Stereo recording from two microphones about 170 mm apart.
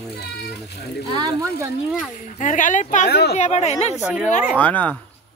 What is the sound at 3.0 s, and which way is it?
Speech, 75° left (ahead or behind).